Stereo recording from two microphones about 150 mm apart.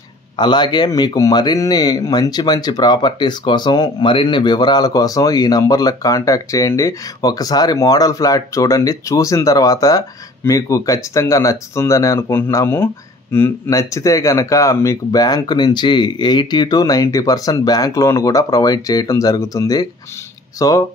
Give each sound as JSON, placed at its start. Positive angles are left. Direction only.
{"t": 0.4, "sound": "speech", "side_deg": 30}